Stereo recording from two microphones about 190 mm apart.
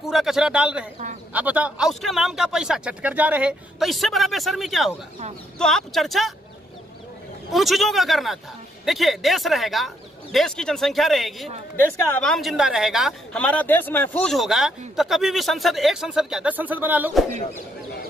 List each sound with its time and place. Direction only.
0.0 s a woman's voice: centre (ahead or behind)
7.5 s a woman's voice: centre (ahead or behind)